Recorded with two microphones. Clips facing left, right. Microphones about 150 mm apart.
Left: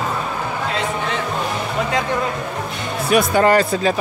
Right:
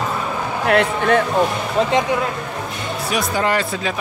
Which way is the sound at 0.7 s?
60° right (ahead or behind).